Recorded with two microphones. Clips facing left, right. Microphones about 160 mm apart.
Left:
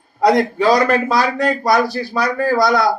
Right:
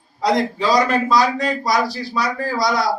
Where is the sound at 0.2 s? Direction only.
60° left (ahead or behind).